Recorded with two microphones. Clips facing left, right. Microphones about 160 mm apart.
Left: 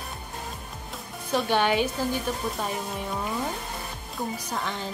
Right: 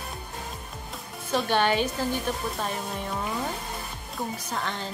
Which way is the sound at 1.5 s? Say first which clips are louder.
Even; 10° left (ahead or behind).